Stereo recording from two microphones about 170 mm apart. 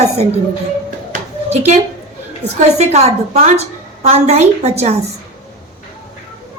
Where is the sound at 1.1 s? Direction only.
45° right (ahead or behind).